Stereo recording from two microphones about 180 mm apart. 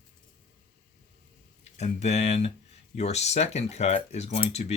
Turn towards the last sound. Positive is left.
turn(degrees=35)  # may be behind; listen again after turning